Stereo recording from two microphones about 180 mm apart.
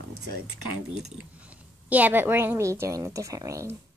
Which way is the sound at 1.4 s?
10° right (ahead or behind).